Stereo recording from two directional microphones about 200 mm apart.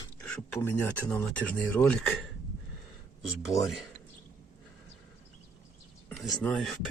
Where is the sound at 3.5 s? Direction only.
Centre (ahead or behind).